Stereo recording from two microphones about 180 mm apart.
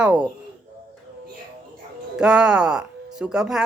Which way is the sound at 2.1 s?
5° right (ahead or behind).